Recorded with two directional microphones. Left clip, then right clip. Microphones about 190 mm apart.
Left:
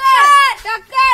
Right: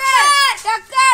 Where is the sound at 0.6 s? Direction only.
30° right (ahead or behind).